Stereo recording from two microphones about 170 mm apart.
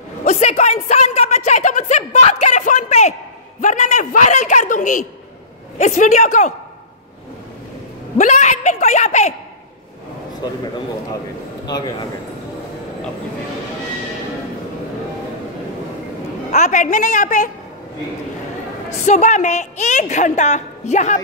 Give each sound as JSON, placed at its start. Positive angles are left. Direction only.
{"t": 0.2, "sound": "a sound", "side_deg": 45}
{"t": 3.6, "sound": "a woman's voice", "side_deg": 45}
{"t": 8.2, "sound": "a woman's voice", "side_deg": 45}
{"t": 11.6, "sound": "a man's voice", "side_deg": 25}
{"t": 16.5, "sound": "a woman's voice", "side_deg": 45}
{"t": 19.0, "sound": "a woman's voice", "side_deg": 45}